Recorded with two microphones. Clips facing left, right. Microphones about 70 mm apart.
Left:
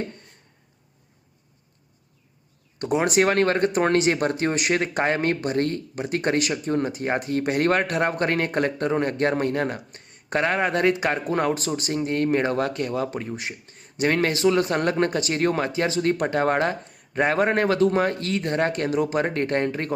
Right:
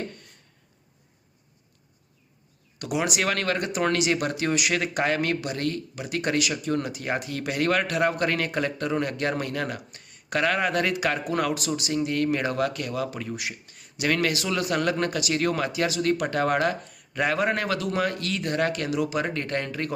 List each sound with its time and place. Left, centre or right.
2.7 s speech: left